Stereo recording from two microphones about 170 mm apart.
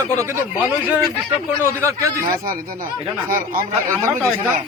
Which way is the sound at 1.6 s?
15° right (ahead or behind).